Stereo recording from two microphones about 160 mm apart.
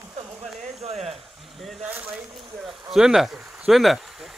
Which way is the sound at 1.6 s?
5° right (ahead or behind).